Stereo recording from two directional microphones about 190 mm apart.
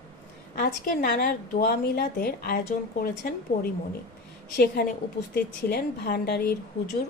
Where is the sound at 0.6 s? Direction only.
55° left (ahead or behind).